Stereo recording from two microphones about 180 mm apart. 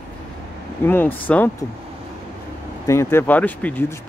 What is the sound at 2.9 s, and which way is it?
Speech, 15° left (ahead or behind).